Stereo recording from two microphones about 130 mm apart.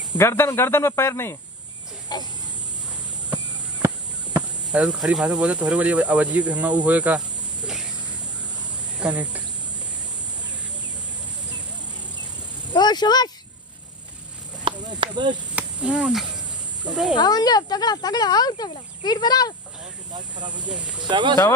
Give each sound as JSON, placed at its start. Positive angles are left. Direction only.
{"t": 0.2, "sound": "speech", "side_deg": 20}
{"t": 2.1, "sound": "speech", "side_deg": 35}
{"t": 4.4, "sound": "speech", "side_deg": -10}
{"t": 9.0, "sound": "speech", "side_deg": -10}
{"t": 12.7, "sound": "speech", "side_deg": 35}
{"t": 14.6, "sound": "chop", "side_deg": -35}
{"t": 15.6, "sound": "cricket", "side_deg": -10}
{"t": 16.0, "sound": "speech", "side_deg": -5}
{"t": 17.1, "sound": "speech", "side_deg": 30}
{"t": 21.1, "sound": "speech", "side_deg": -35}